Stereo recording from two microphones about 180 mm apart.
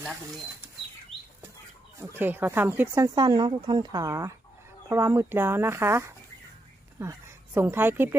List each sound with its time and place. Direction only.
2.0 s speech: 10° right (ahead or behind)